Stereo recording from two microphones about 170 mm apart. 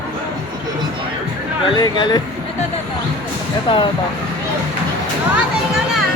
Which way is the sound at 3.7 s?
30° left (ahead or behind).